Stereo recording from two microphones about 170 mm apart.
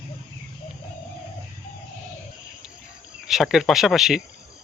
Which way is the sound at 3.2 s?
Centre (ahead or behind).